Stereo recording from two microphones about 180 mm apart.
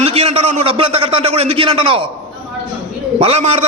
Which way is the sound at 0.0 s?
35° right (ahead or behind).